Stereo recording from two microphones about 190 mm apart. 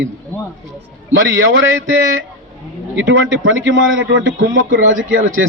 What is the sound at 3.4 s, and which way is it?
A man's voice, 90° right.